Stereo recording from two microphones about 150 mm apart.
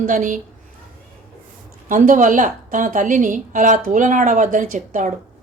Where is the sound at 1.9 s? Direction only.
60° right (ahead or behind).